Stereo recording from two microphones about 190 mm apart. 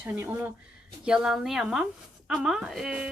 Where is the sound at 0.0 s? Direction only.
10° right (ahead or behind).